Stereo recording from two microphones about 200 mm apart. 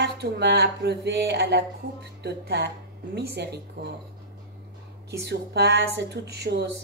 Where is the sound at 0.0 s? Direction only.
55° right (ahead or behind).